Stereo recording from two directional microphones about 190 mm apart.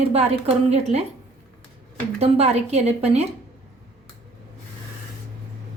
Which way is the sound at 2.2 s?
35° right (ahead or behind).